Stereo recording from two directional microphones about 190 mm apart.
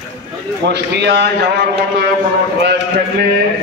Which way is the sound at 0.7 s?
65° right (ahead or behind).